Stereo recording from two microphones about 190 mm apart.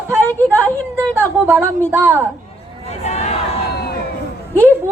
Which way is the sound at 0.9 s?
10° right (ahead or behind).